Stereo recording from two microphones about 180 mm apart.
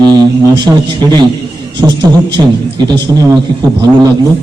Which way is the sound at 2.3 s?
25° right (ahead or behind).